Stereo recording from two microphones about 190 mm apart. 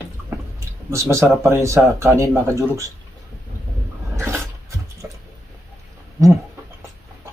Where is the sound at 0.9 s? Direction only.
15° right (ahead or behind).